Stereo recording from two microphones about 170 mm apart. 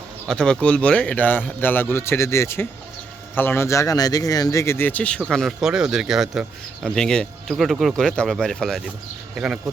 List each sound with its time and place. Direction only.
0.3 s a man's voice: 5° left (ahead or behind)